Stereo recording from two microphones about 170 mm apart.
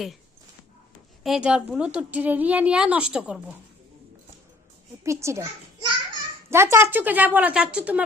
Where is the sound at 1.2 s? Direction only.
5° right (ahead or behind).